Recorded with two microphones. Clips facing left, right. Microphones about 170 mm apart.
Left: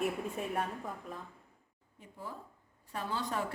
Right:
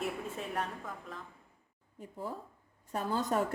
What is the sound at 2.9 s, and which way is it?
Speech, 45° right (ahead or behind).